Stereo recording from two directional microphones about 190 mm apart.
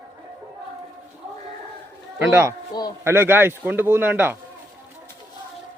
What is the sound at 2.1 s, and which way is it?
A man's voice, 15° right (ahead or behind).